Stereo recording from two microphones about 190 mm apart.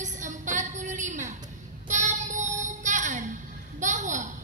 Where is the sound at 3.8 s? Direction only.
40° right (ahead or behind).